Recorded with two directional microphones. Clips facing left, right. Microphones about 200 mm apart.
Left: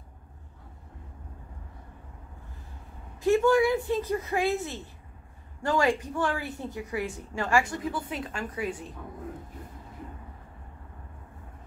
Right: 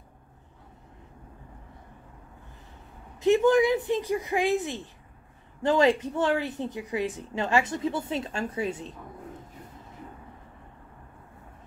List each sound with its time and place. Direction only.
3.2 s a woman's voice: 20° right (ahead or behind)